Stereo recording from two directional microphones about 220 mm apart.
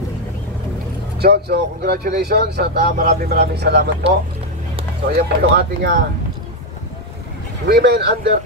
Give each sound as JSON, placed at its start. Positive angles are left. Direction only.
{"t": 1.1, "sound": "speech", "side_deg": -50}
{"t": 5.1, "sound": "speech", "side_deg": -45}
{"t": 7.6, "sound": "speech", "side_deg": -50}